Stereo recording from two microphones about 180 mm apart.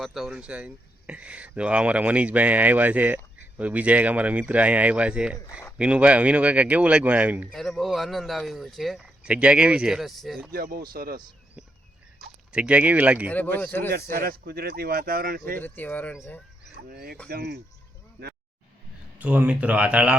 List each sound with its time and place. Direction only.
0.0 s speech: centre (ahead or behind)
10.5 s speech: 55° right (ahead or behind)
12.5 s speech: 5° right (ahead or behind)
13.3 s speech: 10° left (ahead or behind)
13.9 s speech: 55° right (ahead or behind)
15.5 s speech: 10° left (ahead or behind)
16.9 s speech: 60° right (ahead or behind)
19.2 s speech: 10° right (ahead or behind)